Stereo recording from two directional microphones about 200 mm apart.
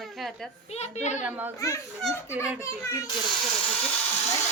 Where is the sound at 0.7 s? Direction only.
35° left (ahead or behind).